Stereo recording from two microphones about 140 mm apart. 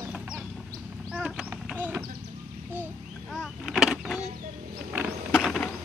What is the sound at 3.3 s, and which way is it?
Vehicle, centre (ahead or behind).